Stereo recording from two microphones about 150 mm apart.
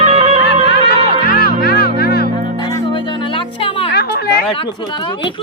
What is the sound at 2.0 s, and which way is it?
Music, 90° left.